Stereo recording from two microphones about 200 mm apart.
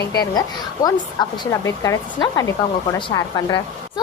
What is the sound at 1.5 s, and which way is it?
A woman's voice, 15° left (ahead or behind).